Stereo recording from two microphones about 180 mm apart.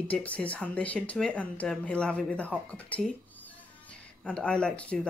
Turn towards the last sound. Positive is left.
turn(degrees=5)  # may be behind; listen again after turning